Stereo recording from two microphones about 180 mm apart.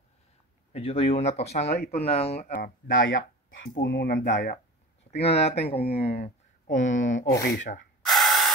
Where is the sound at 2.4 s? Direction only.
70° left (ahead or behind).